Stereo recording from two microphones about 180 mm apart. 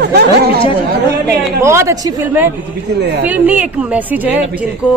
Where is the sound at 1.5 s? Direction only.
15° right (ahead or behind).